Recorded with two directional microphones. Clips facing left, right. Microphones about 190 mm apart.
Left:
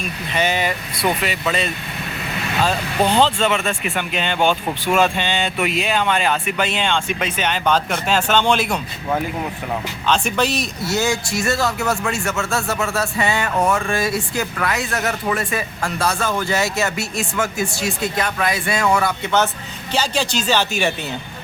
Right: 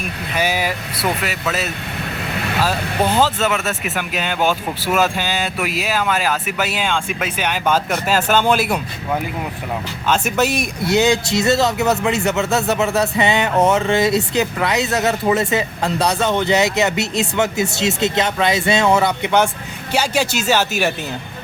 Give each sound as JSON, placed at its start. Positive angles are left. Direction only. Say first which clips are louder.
{"t": 0.3, "sound": "speech", "louder": "even", "side_deg": -10}
{"t": 10.1, "sound": "speech", "louder": "right 2 dB", "side_deg": -5}